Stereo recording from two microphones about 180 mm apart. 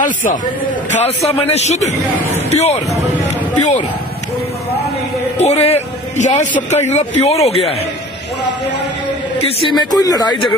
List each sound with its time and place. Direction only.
0.0 s a man's voice: 45° left (ahead or behind)
5.4 s a man's voice: 35° left (ahead or behind)
9.4 s speech: 30° left (ahead or behind)